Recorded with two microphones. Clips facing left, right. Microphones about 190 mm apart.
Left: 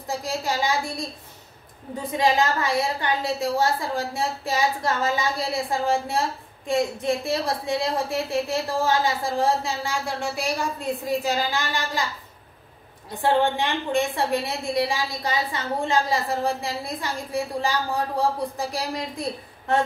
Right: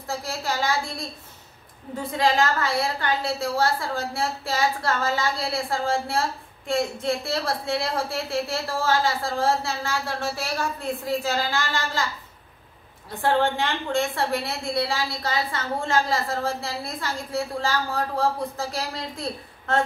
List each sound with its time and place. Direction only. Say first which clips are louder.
0.0 s a woman's voice: left 2 dB; 15° left (ahead or behind)
2.0 s a woman's voice: left 1 dB; 15° left (ahead or behind)
13.1 s a woman's voice: left 1 dB; 15° left (ahead or behind)